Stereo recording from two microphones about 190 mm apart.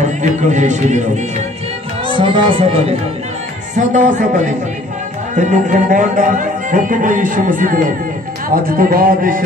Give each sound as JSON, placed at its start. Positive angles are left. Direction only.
{"t": 0.0, "sound": "speech", "side_deg": -40}
{"t": 2.0, "sound": "speech", "side_deg": -25}